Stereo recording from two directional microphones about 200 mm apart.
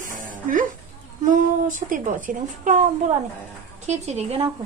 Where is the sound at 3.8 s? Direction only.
35° right (ahead or behind).